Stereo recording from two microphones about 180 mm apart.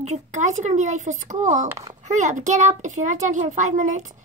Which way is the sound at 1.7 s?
20° right (ahead or behind).